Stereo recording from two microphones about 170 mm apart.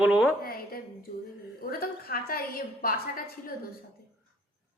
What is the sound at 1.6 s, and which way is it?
A woman's voice, 60° left (ahead or behind).